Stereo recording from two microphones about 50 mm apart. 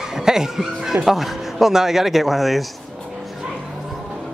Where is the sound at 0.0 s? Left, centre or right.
Centre.